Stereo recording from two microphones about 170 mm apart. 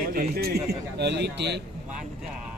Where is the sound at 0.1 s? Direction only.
65° right (ahead or behind); by 1.6 s 80° right.